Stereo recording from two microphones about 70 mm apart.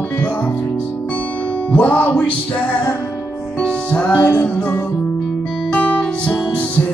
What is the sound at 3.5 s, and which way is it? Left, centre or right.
Music, centre.